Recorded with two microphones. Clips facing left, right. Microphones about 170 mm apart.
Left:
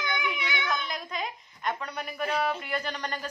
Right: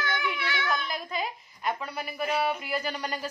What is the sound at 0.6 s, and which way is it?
Speech, centre (ahead or behind).